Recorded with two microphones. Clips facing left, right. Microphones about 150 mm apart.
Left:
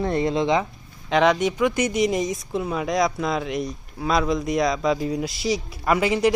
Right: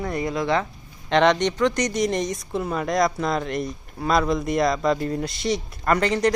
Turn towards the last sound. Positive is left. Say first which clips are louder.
# left 1 dB
turn(degrees=5)  # may be behind; listen again after turning